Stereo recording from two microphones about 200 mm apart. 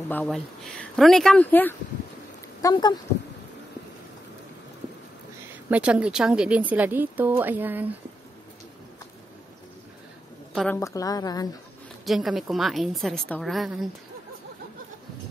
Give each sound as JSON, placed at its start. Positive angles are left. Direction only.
{"t": 0.1, "sound": "a woman's voice", "side_deg": 5}
{"t": 2.6, "sound": "speech", "side_deg": 20}
{"t": 5.7, "sound": "a woman's voice", "side_deg": -5}
{"t": 10.5, "sound": "a woman's voice", "side_deg": 0}
{"t": 10.8, "sound": "a woman's voice", "side_deg": 15}
{"t": 12.0, "sound": "a woman's voice", "side_deg": 0}